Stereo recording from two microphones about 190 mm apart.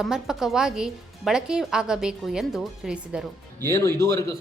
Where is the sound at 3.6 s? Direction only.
15° left (ahead or behind).